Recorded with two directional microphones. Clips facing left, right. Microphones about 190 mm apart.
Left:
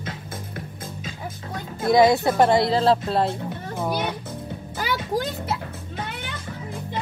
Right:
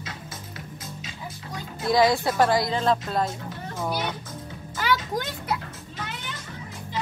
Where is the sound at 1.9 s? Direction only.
20° left (ahead or behind).